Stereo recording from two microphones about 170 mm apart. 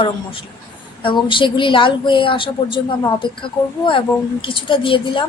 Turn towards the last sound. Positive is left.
turn(degrees=30)  # may be behind; listen again after turning